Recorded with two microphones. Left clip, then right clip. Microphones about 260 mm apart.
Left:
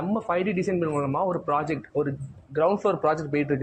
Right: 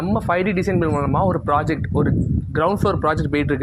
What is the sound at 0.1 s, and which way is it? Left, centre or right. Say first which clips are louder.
Speech: right 7 dB; right.